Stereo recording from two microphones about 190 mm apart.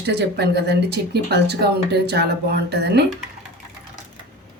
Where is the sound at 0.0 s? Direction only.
60° right (ahead or behind).